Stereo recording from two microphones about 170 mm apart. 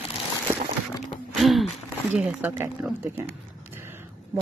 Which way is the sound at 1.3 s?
Centre (ahead or behind).